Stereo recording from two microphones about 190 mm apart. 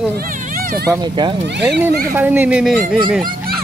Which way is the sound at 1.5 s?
65° right (ahead or behind).